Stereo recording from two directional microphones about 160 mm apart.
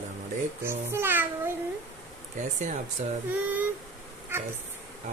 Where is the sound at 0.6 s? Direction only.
15° right (ahead or behind).